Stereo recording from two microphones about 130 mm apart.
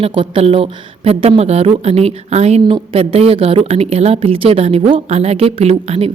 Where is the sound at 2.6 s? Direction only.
40° right (ahead or behind).